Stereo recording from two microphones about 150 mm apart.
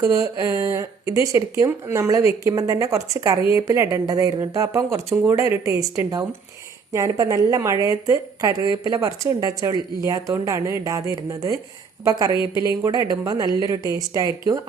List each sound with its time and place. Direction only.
0.0 s speech: 25° right (ahead or behind)